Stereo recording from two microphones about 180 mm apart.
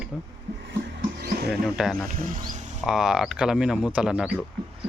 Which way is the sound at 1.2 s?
65° right (ahead or behind).